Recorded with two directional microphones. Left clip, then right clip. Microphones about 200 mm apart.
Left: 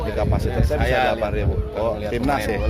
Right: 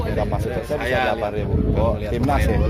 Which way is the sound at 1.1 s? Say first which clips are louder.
Even; 20° right (ahead or behind).